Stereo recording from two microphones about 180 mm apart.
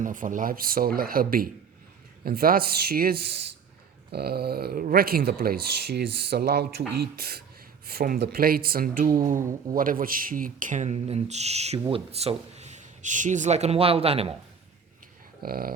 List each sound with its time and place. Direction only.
0.0 s speech: 45° right (ahead or behind)
15.4 s speech: 55° right (ahead or behind)